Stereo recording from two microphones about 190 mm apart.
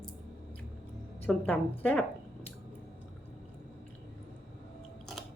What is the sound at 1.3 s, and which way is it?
Speech, 10° left (ahead or behind).